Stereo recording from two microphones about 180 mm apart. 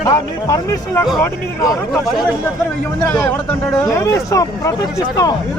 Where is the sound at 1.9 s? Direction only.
Centre (ahead or behind).